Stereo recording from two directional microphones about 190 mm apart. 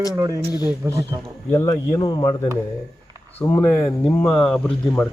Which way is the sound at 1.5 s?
15° left (ahead or behind).